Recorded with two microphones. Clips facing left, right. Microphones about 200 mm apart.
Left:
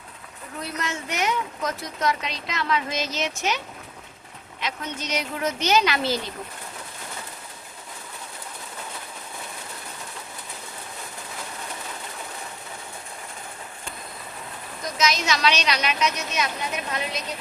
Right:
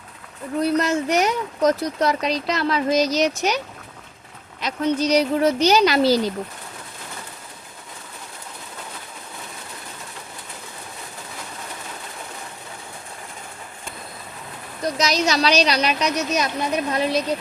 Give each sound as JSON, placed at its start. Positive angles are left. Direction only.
{"t": 0.8, "sound": "speech", "side_deg": -40}
{"t": 4.6, "sound": "speech", "side_deg": -35}
{"t": 14.9, "sound": "speech", "side_deg": -35}